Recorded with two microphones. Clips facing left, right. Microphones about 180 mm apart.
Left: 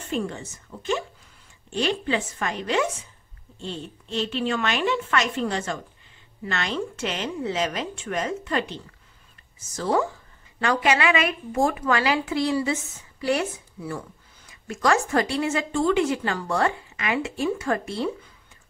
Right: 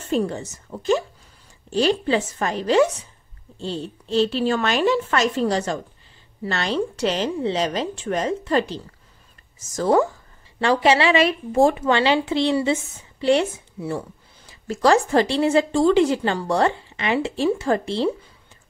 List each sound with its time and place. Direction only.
0.1 s a woman's voice: 40° right (ahead or behind)
10.6 s a woman's voice: 30° right (ahead or behind)